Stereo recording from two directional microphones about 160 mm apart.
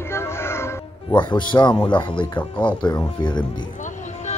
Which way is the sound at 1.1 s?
30° left (ahead or behind).